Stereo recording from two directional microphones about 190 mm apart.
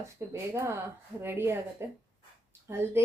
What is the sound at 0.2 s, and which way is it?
A woman's voice, 15° right (ahead or behind).